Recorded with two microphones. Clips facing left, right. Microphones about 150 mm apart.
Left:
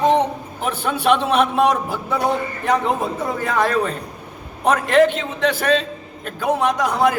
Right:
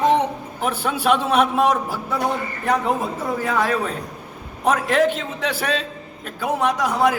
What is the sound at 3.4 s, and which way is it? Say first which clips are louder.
A man's voice: left 3 dB; 5° right (ahead or behind).